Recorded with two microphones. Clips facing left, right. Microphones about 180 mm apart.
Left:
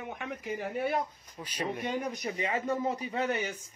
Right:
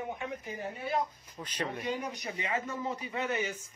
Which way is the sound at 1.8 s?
45° left (ahead or behind).